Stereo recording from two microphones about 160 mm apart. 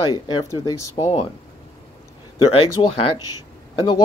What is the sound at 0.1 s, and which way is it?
Speech, 25° left (ahead or behind).